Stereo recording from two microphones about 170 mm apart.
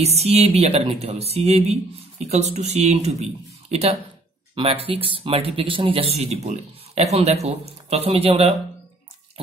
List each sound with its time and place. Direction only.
0.0 s speech: 40° right (ahead or behind)